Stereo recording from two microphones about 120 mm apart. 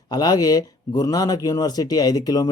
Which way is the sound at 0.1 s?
35° left (ahead or behind).